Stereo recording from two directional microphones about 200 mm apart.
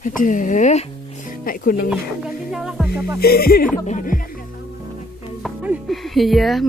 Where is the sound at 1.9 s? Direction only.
5° right (ahead or behind).